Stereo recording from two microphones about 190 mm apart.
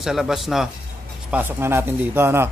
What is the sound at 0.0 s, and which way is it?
A man's voice, centre (ahead or behind).